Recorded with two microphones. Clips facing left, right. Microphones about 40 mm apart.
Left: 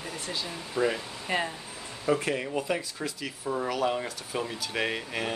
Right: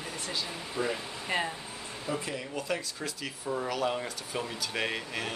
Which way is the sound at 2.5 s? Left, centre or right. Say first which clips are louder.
Left 3 dB; centre.